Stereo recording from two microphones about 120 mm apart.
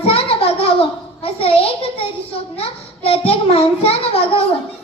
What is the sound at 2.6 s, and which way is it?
A child's voice, 55° left (ahead or behind).